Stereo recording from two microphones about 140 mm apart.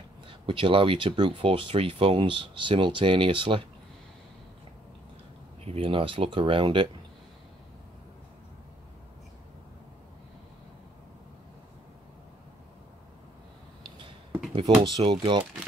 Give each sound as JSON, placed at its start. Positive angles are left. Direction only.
{"t": 0.3, "sound": "speech", "side_deg": -35}
{"t": 5.7, "sound": "speech", "side_deg": -40}
{"t": 13.8, "sound": "a sound", "side_deg": -35}
{"t": 14.5, "sound": "speech", "side_deg": -40}